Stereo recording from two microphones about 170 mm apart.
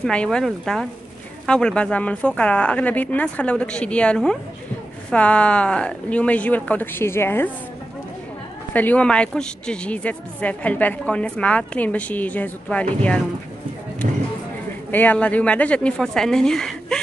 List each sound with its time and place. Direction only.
0.0 s a woman's voice: 5° left (ahead or behind)
8.7 s a woman's voice: 10° left (ahead or behind)
14.0 s a sound: 50° right (ahead or behind)
14.9 s a woman's voice: 10° left (ahead or behind)